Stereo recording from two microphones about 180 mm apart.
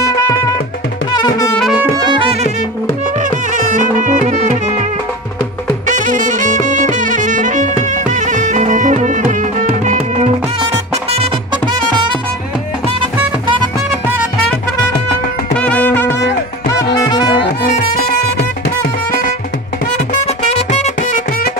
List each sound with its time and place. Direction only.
1.1 s music: 25° left (ahead or behind)
1.6 s brass instrument: 5° right (ahead or behind)
1.9 s music: 25° right (ahead or behind)
3.2 s music: 45° right (ahead or behind)
5.9 s music: 45° right (ahead or behind)
15.5 s music: 5° left (ahead or behind)
16.7 s music: 25° left (ahead or behind)
18.4 s music: 55° left (ahead or behind)
20.2 s music: 35° left (ahead or behind)